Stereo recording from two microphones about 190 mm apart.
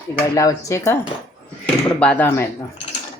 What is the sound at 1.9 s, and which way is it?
Speech, 10° left (ahead or behind).